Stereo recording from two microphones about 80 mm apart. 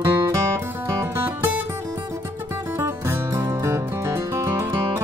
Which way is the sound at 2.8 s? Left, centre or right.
Right.